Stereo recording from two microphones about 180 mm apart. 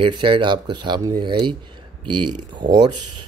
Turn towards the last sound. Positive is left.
turn(degrees=-25)  # may be behind; listen again after turning